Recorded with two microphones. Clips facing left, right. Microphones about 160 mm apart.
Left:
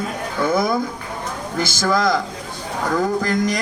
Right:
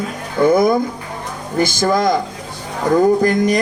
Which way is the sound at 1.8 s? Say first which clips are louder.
Right 2 dB; 20° right (ahead or behind).